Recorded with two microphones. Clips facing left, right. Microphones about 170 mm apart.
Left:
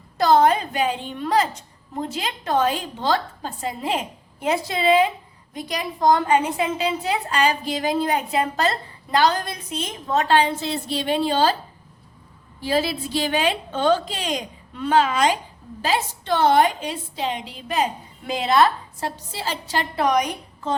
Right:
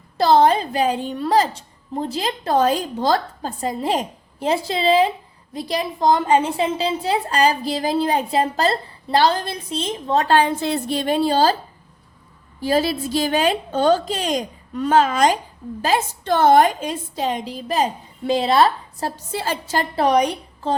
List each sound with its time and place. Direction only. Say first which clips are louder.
0.2 s a woman's voice: right 2 dB; 30° right (ahead or behind)
12.5 s a woman's voice: right 3 dB; 45° right (ahead or behind)
19.3 s a woman's voice: right 5 dB; 50° right (ahead or behind); by 20.7 s 30° right (ahead or behind)